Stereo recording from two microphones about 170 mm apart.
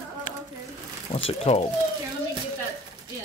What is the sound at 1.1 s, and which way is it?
Speech, 40° left (ahead or behind).